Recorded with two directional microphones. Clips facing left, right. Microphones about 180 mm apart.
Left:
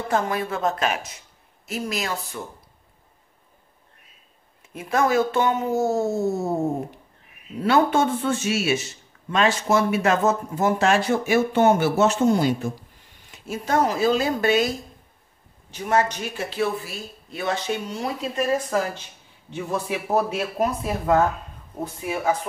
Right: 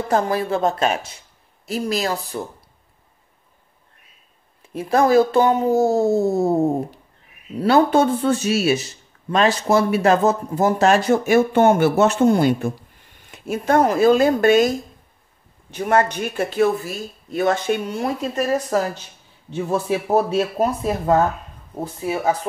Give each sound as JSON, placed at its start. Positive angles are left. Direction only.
{"t": 0.1, "sound": "speech", "side_deg": -35}
{"t": 4.7, "sound": "speech", "side_deg": -35}
{"t": 15.7, "sound": "speech", "side_deg": -55}